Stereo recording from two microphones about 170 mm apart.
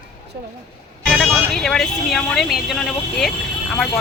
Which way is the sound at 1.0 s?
Centre (ahead or behind).